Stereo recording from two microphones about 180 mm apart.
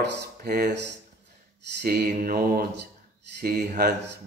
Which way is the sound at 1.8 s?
60° right (ahead or behind).